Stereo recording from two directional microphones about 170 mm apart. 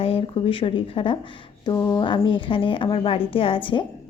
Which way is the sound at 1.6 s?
20° left (ahead or behind).